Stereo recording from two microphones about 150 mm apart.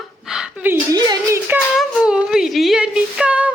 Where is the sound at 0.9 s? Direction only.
25° right (ahead or behind).